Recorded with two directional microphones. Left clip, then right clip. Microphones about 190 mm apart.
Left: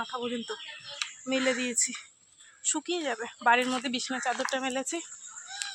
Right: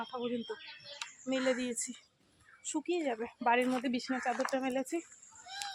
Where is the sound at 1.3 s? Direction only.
20° left (ahead or behind).